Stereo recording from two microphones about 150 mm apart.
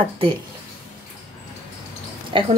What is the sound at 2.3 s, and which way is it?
Speech, 35° right (ahead or behind).